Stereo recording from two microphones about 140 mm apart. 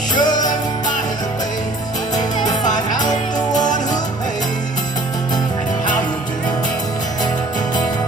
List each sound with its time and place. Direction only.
0.2 s music: 30° left (ahead or behind)
2.7 s music: 30° left (ahead or behind)